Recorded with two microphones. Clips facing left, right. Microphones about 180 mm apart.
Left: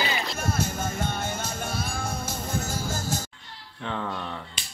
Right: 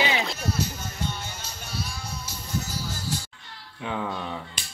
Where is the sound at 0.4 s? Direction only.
50° left (ahead or behind).